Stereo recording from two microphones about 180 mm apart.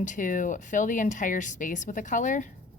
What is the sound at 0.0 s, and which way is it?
A woman's voice, 45° left (ahead or behind).